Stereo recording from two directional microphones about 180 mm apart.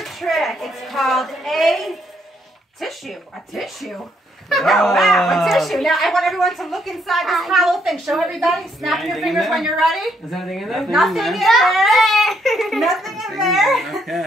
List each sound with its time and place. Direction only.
0.0 s speech: centre (ahead or behind)